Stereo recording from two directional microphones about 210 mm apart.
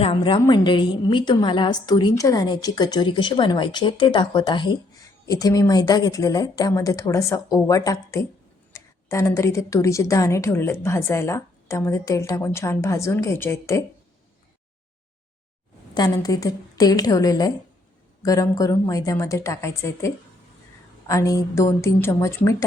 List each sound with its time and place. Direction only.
0.0 s a woman's voice: 25° left (ahead or behind)
16.0 s a woman's voice: 20° left (ahead or behind)